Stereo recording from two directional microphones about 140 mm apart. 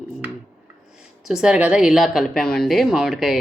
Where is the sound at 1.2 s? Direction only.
5° right (ahead or behind).